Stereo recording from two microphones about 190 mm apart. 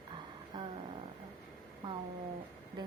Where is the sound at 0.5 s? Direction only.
25° right (ahead or behind).